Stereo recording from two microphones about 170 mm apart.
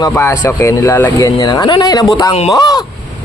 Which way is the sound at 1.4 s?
25° left (ahead or behind).